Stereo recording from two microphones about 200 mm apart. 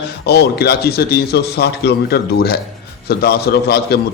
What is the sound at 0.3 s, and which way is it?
A man's voice, 55° left (ahead or behind).